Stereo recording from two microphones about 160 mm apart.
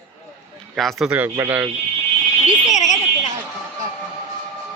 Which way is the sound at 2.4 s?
50° left (ahead or behind).